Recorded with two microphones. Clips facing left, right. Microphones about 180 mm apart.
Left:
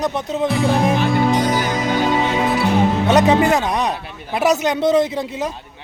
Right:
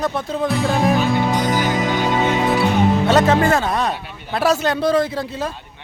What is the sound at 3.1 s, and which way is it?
A man's voice, 15° left (ahead or behind).